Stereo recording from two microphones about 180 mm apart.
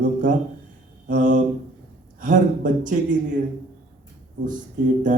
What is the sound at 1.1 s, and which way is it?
A man's voice, 45° right (ahead or behind).